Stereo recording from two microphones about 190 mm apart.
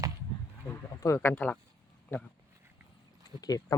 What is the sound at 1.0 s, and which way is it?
Speech, 15° left (ahead or behind).